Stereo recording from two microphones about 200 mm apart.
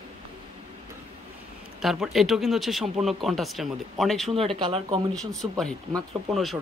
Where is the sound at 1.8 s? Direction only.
Centre (ahead or behind).